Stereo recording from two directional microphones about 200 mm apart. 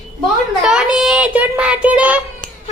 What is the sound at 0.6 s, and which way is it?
Speech, 5° right (ahead or behind).